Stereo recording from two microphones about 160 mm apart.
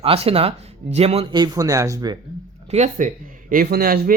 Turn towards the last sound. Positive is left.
turn(degrees=-65)  # may be behind; listen again after turning